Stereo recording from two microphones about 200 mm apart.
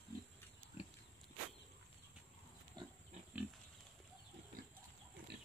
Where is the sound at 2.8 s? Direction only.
20° right (ahead or behind).